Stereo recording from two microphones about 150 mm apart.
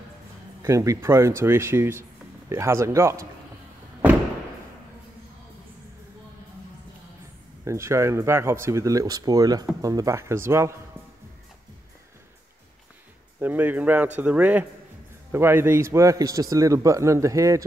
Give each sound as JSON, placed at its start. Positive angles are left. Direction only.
{"t": 0.6, "sound": "speech", "side_deg": -20}
{"t": 7.6, "sound": "speech", "side_deg": -20}
{"t": 13.4, "sound": "speech", "side_deg": -10}